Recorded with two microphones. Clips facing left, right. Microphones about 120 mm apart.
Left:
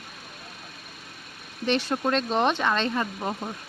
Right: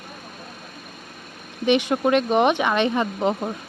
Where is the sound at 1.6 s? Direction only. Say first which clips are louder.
Right 6 dB; 15° right (ahead or behind).